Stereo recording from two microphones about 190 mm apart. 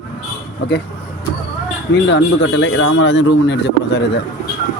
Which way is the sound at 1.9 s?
65° left (ahead or behind).